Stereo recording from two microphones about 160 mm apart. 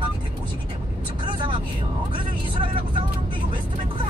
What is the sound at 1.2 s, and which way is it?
Vehicle, 30° right (ahead or behind).